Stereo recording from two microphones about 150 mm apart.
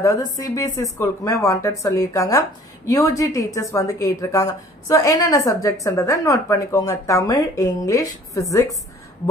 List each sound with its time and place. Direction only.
0.0 s a woman's voice: 25° left (ahead or behind)